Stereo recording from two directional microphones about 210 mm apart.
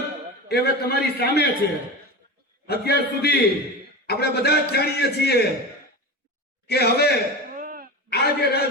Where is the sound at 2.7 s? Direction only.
50° left (ahead or behind).